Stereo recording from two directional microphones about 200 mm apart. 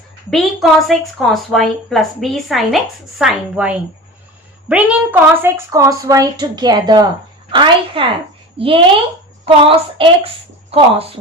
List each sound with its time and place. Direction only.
0.3 s a woman's voice: centre (ahead or behind); by 11.0 s 30° right (ahead or behind)